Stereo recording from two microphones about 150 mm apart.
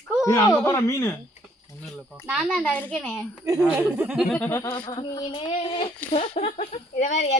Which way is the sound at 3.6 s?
10° right (ahead or behind).